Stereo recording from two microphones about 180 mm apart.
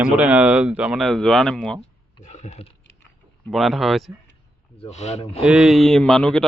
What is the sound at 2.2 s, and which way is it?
Speech, 40° left (ahead or behind).